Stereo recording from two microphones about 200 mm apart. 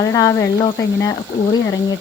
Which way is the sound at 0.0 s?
20° left (ahead or behind).